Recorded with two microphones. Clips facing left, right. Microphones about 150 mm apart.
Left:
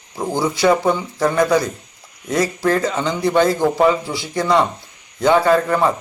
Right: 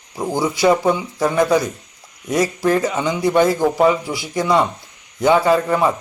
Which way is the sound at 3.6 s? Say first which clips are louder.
Even; 5° right (ahead or behind).